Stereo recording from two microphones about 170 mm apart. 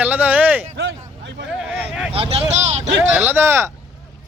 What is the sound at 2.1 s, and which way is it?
Speech, 35° right (ahead or behind).